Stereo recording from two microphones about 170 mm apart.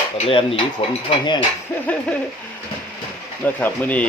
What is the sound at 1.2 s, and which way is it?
Cutlery, 25° left (ahead or behind).